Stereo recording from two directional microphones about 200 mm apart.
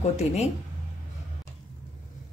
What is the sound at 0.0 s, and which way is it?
Speech, 35° left (ahead or behind).